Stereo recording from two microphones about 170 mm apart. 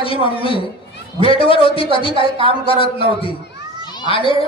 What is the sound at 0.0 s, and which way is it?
A man's voice, 30° left (ahead or behind).